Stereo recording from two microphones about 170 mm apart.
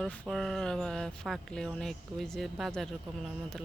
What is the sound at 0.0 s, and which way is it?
Speech, centre (ahead or behind).